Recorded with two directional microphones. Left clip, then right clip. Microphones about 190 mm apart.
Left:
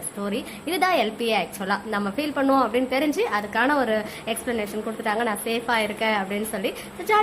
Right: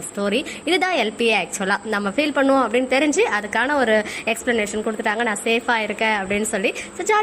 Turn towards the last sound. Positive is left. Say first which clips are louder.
# right 3 dB
turn(degrees=-20)  # may be behind; listen again after turning